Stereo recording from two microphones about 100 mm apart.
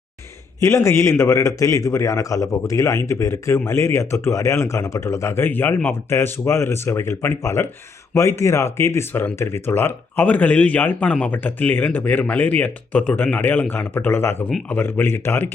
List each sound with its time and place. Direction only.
0.6 s a man's voice: 30° left (ahead or behind)